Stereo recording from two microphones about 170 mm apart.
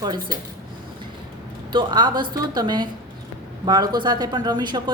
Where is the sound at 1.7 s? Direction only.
25° right (ahead or behind).